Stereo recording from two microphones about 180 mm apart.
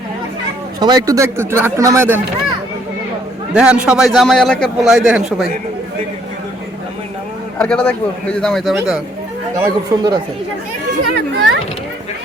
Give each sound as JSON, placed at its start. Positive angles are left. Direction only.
{"t": 0.8, "sound": "speech", "side_deg": -20}
{"t": 3.5, "sound": "a man's voice", "side_deg": -5}
{"t": 7.6, "sound": "a man's voice", "side_deg": 5}
{"t": 9.6, "sound": "speech", "side_deg": -20}
{"t": 11.1, "sound": "a child's voice", "side_deg": -70}